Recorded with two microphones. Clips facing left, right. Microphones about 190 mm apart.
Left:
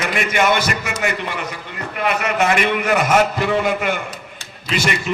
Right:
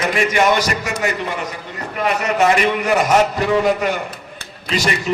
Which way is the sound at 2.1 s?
40° right (ahead or behind).